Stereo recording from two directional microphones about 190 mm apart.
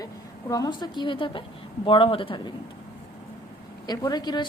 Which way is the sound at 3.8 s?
20° left (ahead or behind).